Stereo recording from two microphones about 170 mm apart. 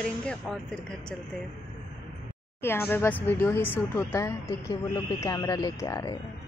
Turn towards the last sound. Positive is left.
turn(degrees=20)  # may be behind; listen again after turning